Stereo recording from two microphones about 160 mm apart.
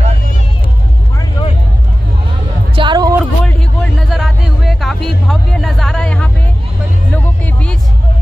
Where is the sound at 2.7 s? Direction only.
25° right (ahead or behind).